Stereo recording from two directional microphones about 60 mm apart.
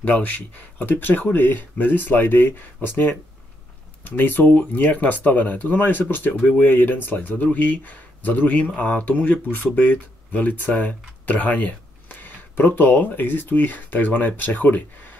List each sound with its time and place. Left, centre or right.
0.0 s speech: left